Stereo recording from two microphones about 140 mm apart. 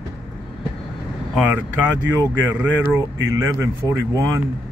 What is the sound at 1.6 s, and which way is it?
Speech, 15° right (ahead or behind).